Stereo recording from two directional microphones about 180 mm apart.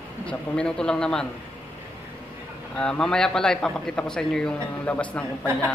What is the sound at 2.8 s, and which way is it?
A man's voice, 5° left (ahead or behind).